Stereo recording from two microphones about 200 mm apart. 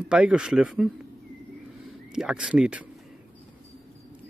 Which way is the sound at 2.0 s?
5° right (ahead or behind).